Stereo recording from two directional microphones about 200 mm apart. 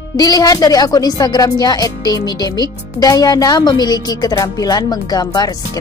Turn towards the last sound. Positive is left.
turn(degrees=20)  # may be behind; listen again after turning